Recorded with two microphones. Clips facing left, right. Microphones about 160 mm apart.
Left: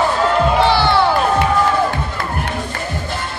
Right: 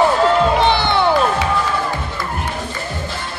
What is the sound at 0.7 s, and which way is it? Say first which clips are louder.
Music: left 2 dB; 20° right (ahead or behind).